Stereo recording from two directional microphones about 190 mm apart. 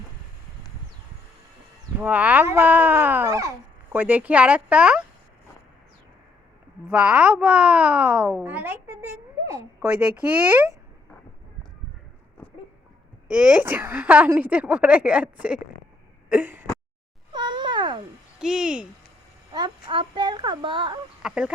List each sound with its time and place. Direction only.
2.0 s a woman's voice: 10° right (ahead or behind)
7.0 s speech: 5° right (ahead or behind)
13.2 s a woman's voice: 5° right (ahead or behind)
16.3 s throat clearing: 10° right (ahead or behind)
17.3 s cat: 25° right (ahead or behind)
18.3 s speech: 5° right (ahead or behind)
19.5 s speech: 25° right (ahead or behind)
21.2 s speech: 5° right (ahead or behind)